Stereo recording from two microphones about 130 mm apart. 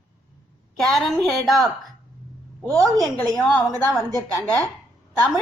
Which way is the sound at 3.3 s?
10° left (ahead or behind).